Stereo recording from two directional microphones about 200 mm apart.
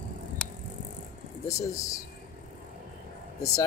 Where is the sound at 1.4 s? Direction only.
15° left (ahead or behind).